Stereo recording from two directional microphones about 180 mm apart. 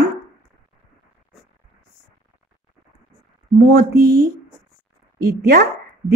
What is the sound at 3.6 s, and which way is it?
Speech, 65° right (ahead or behind).